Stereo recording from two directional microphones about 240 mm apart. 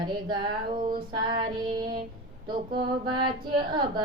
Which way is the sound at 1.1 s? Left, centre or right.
Centre.